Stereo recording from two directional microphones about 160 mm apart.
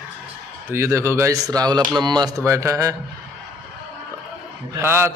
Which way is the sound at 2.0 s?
25° right (ahead or behind).